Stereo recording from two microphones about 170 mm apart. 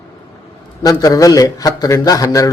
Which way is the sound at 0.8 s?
20° left (ahead or behind).